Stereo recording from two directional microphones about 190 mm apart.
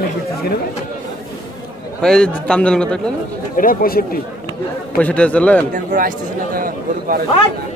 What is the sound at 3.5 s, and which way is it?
Speech, 50° left (ahead or behind).